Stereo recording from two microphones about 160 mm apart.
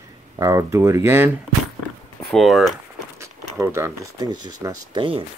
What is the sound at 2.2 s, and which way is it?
Speech, centre (ahead or behind).